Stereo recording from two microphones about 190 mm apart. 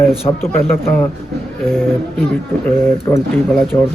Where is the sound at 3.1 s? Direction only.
10° left (ahead or behind).